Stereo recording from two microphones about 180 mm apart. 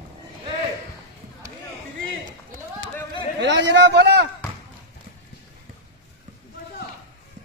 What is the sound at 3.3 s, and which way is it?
Speech, 75° right (ahead or behind).